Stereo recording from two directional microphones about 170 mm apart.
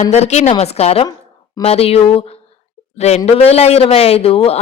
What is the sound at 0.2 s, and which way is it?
A man's voice, 40° left (ahead or behind).